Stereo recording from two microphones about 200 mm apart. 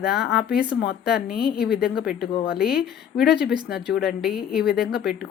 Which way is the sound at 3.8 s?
5° right (ahead or behind).